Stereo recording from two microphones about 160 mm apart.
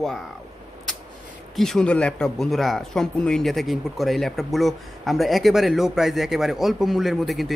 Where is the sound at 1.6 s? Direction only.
5° left (ahead or behind).